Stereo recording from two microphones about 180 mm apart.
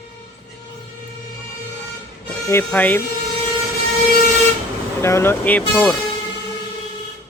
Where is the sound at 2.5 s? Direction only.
10° left (ahead or behind).